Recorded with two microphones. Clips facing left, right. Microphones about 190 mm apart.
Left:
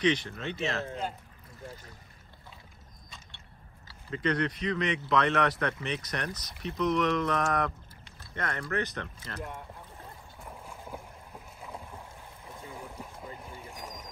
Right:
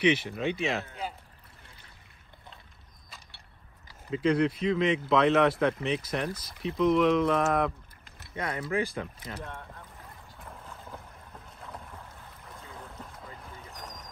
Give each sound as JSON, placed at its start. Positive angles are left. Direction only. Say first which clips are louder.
{"t": 0.0, "sound": "speech", "louder": "right 3 dB", "side_deg": -10}
{"t": 4.1, "sound": "speech", "louder": "right 4 dB", "side_deg": -5}
{"t": 9.4, "sound": "speech", "louder": "left 1 dB", "side_deg": 10}
{"t": 10.4, "sound": "boat", "louder": "left 1 dB", "side_deg": 10}
{"t": 13.1, "sound": "boat", "louder": "left 2 dB", "side_deg": 25}
{"t": 13.6, "sound": "boat", "louder": "left 2 dB", "side_deg": 10}